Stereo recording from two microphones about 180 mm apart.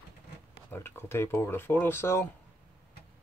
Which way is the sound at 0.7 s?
15° left (ahead or behind).